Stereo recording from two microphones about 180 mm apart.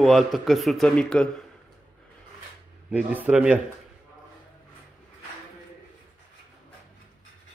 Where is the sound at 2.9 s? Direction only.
10° right (ahead or behind).